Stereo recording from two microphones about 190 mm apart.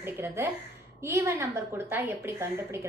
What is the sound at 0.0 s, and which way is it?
A woman's voice, 15° right (ahead or behind).